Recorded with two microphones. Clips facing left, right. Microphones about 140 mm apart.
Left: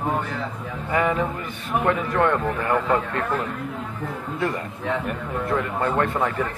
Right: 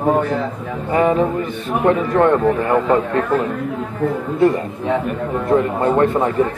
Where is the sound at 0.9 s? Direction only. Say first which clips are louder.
Right 7 dB; 30° right (ahead or behind).